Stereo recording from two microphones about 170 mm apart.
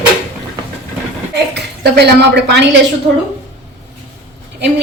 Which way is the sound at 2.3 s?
80° right.